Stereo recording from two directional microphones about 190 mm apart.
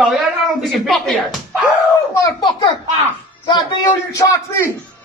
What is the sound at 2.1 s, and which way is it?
A child's voice, 20° left (ahead or behind).